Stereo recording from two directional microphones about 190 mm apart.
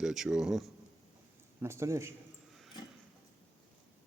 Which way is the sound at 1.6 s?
15° right (ahead or behind).